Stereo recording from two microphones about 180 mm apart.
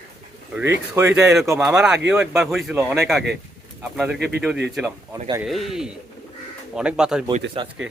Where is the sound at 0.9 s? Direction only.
5° right (ahead or behind).